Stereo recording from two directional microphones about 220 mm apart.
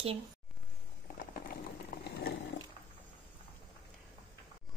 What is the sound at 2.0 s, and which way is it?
Wild animals, 50° left (ahead or behind).